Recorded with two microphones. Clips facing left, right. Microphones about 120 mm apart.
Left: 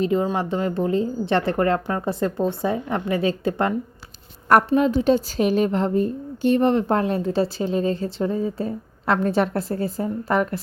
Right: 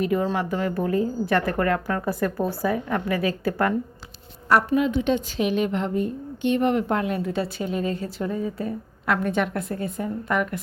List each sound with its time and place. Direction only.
0.0 s a woman's voice: 20° left (ahead or behind)
4.7 s a woman's voice: 35° left (ahead or behind)